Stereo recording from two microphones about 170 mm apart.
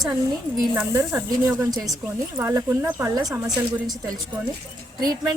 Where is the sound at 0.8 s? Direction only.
15° right (ahead or behind).